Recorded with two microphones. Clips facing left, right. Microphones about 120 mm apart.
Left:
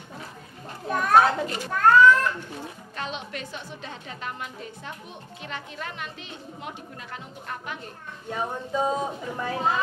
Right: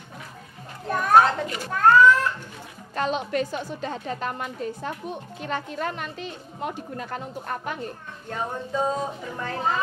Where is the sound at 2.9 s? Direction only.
45° right (ahead or behind).